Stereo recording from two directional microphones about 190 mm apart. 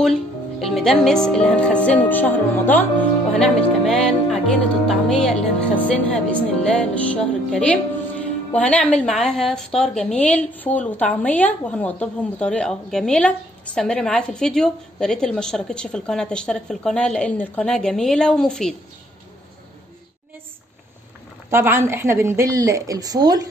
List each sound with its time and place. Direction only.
0.6 s a woman's voice: centre (ahead or behind)
21.5 s a woman's voice: 10° right (ahead or behind)